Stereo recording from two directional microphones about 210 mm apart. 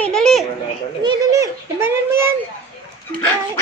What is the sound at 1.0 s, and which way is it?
Speech, 15° right (ahead or behind).